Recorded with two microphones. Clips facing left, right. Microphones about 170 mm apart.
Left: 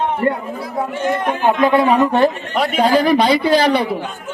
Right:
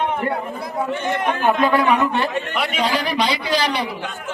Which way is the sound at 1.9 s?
40° left (ahead or behind).